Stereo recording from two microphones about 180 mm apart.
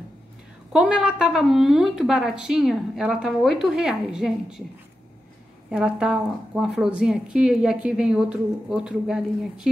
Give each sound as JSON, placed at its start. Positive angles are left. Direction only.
{"t": 0.7, "sound": "a woman's voice", "side_deg": -5}
{"t": 5.7, "sound": "a woman's voice", "side_deg": -5}